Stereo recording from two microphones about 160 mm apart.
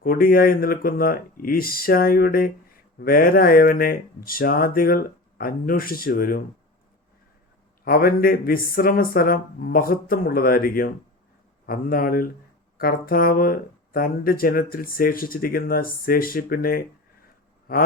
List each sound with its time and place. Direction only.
0.0 s speech: 65° left (ahead or behind)
7.9 s speech: 65° left (ahead or behind)
17.7 s a sound: 65° left (ahead or behind)